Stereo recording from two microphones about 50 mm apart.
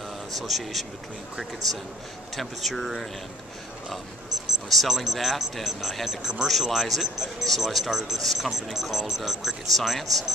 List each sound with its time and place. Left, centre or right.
0.4 s speech: centre
2.3 s speech: centre
4.6 s speech: centre